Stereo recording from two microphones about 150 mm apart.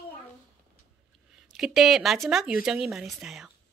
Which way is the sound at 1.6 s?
Centre (ahead or behind).